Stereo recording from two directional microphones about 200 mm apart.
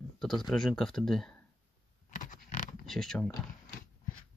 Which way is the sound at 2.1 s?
40° left (ahead or behind).